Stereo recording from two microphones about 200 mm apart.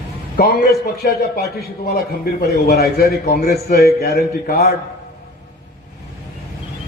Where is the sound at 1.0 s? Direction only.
50° left (ahead or behind).